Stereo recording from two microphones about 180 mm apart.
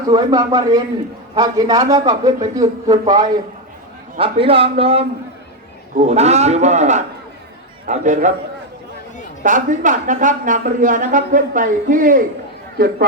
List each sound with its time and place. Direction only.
0.1 s a man's voice: 20° right (ahead or behind)
6.1 s a man's voice: 35° right (ahead or behind)
9.4 s a man's voice: 45° right (ahead or behind)